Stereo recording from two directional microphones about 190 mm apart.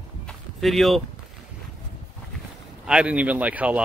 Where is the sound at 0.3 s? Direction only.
Centre (ahead or behind).